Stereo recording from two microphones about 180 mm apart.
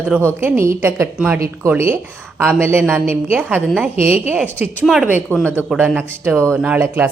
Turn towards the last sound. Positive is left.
turn(degrees=-10)  # may be behind; listen again after turning